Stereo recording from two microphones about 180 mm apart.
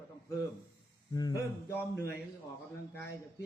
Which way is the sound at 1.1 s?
20° left (ahead or behind).